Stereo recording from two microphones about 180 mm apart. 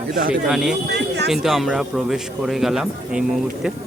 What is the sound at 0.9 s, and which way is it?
Speech, 70° right (ahead or behind).